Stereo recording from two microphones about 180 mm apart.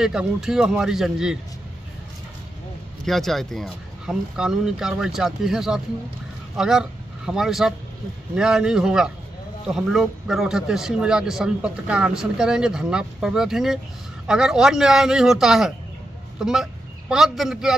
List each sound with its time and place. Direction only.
0.0 s a man's voice: 5° right (ahead or behind)
3.1 s a man's voice: centre (ahead or behind)
16.3 s fowl: centre (ahead or behind)
17.1 s a man's voice: centre (ahead or behind)